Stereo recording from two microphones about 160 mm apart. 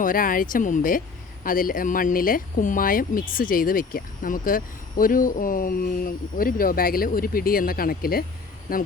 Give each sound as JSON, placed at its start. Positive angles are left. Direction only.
{"t": 0.0, "sound": "speech", "side_deg": 60}